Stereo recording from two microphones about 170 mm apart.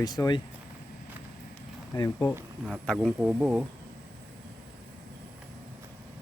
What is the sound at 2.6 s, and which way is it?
Speech, centre (ahead or behind).